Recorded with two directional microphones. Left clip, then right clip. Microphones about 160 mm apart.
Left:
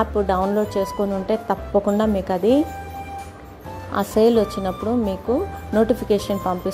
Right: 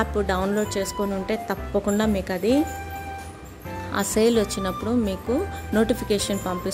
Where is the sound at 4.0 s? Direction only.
5° left (ahead or behind).